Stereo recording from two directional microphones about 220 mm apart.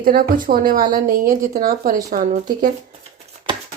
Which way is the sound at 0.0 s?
40° right (ahead or behind).